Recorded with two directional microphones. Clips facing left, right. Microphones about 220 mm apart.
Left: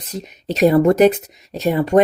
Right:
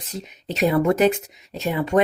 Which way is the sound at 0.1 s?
40° left (ahead or behind).